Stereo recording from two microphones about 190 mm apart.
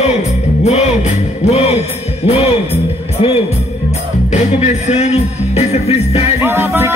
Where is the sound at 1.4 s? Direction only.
35° left (ahead or behind).